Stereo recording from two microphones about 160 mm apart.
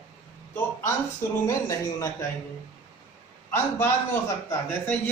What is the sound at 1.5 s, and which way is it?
Speech, 20° left (ahead or behind).